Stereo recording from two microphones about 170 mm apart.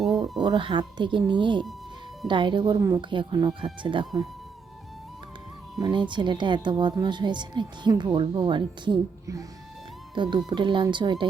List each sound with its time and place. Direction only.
0.3 s speech: 30° right (ahead or behind)
2.8 s speech: 15° right (ahead or behind)
3.1 s speech: 30° right (ahead or behind)
5.8 s speech: 25° right (ahead or behind)